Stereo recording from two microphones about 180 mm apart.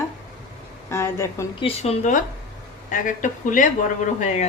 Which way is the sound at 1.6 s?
35° left (ahead or behind).